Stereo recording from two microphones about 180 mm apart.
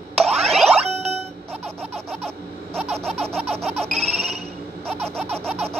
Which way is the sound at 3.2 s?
35° right (ahead or behind).